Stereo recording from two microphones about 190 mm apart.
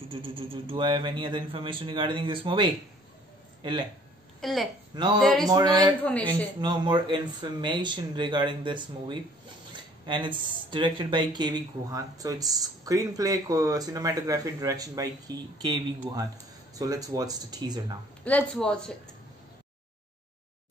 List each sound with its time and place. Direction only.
0.1 s speech: 25° right (ahead or behind)
4.4 s a woman's voice: centre (ahead or behind)
4.9 s speech: 25° right (ahead or behind)
5.2 s speech: centre (ahead or behind)
5.5 s speech: 20° right (ahead or behind)
18.2 s speech: 5° left (ahead or behind)